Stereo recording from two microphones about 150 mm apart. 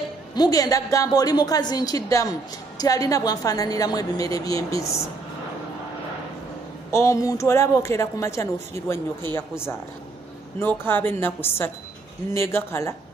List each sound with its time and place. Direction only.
0.3 s speech: 25° left (ahead or behind)
6.9 s a woman's voice: 20° left (ahead or behind)
10.8 s a woman's voice: 15° left (ahead or behind)